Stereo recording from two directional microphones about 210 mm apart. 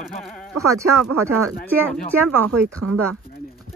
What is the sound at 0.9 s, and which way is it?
Speech, 90° right.